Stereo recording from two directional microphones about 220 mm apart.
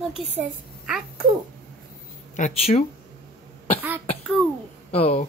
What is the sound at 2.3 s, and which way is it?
Speech, 30° left (ahead or behind).